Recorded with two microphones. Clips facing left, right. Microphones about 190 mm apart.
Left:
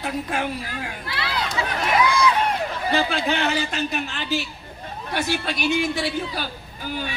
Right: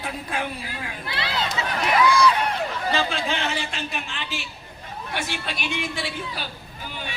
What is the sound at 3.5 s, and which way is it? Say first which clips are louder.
A woman's voice: left 5 dB; 40° left (ahead or behind).